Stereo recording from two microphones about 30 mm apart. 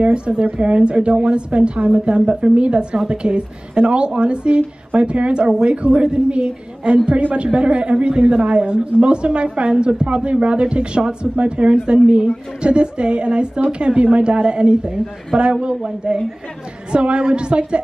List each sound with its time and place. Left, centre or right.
0.0 s a woman's voice: right